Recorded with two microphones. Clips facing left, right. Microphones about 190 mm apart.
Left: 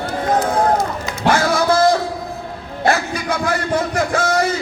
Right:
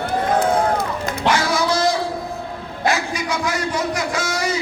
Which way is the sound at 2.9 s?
55° left (ahead or behind).